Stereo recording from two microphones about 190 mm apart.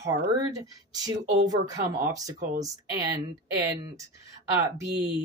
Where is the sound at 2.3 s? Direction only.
40° right (ahead or behind).